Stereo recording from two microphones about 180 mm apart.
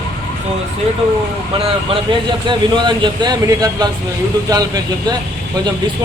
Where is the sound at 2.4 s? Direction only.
25° right (ahead or behind).